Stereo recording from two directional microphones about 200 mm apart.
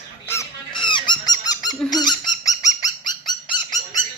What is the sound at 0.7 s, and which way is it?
Honk, 25° left (ahead or behind).